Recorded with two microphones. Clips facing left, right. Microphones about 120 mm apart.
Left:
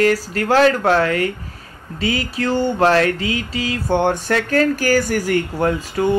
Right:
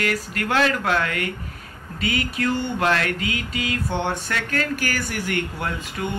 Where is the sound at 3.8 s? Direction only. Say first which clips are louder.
Left 8 dB; 45° left (ahead or behind).